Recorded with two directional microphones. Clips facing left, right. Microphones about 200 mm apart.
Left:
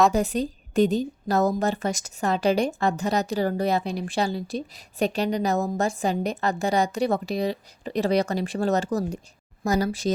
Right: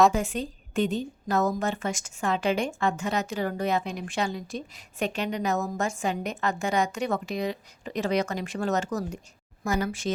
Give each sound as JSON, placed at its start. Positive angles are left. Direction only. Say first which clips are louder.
{"t": 0.1, "sound": "a woman's voice", "louder": "left 5 dB", "side_deg": 40}